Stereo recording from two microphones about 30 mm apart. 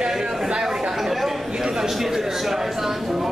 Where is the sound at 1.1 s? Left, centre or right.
Centre.